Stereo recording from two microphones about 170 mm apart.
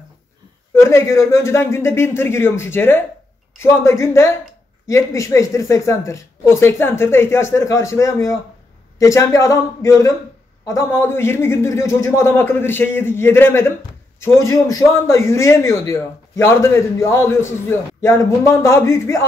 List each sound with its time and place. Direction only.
0.7 s a man's voice: 15° left (ahead or behind)